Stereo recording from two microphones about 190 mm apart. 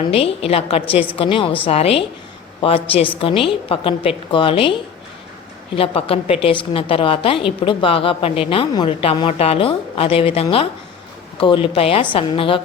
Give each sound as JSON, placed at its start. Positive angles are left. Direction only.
{"t": 0.1, "sound": "a woman's voice", "side_deg": 30}